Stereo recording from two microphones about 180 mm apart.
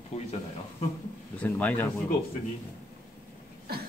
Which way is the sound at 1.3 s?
10° left (ahead or behind).